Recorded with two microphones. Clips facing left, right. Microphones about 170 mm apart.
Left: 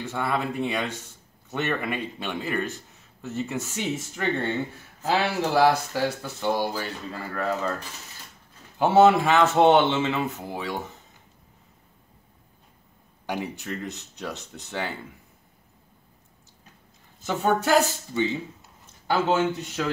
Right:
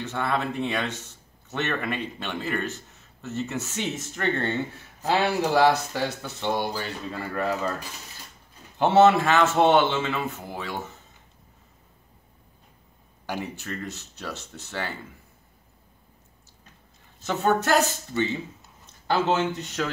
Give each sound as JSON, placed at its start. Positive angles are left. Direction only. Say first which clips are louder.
{"t": 0.0, "sound": "a man's voice", "louder": "even", "side_deg": 10}
{"t": 8.7, "sound": "a man's voice", "louder": "even", "side_deg": 10}
{"t": 13.3, "sound": "a man's voice", "louder": "left 2 dB", "side_deg": 15}
{"t": 17.3, "sound": "a man's voice", "louder": "left 1 dB", "side_deg": 10}